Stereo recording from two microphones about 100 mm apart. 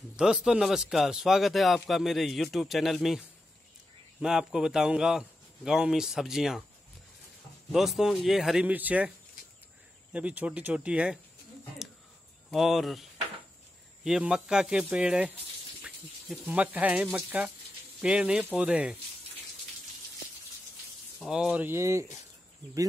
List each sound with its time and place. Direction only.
0.1 s a man's voice: 10° right (ahead or behind)
7.7 s a man's voice: 5° right (ahead or behind)
10.1 s speech: 15° right (ahead or behind)
12.4 s a man's voice: centre (ahead or behind)
16.4 s speech: 15° right (ahead or behind)
21.3 s speech: 10° right (ahead or behind)
21.6 s speech: 30° right (ahead or behind)